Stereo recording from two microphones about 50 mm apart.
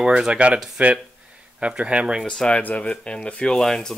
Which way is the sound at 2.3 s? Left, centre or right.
Centre.